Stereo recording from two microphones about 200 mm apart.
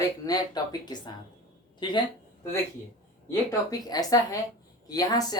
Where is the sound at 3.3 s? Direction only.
20° left (ahead or behind).